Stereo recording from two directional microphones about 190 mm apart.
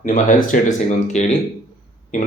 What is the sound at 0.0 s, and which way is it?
Speech, 40° left (ahead or behind).